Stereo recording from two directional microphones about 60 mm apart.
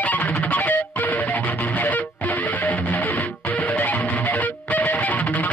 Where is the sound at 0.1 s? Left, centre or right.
Left.